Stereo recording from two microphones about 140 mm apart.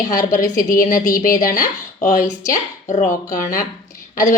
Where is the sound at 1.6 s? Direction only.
65° left (ahead or behind).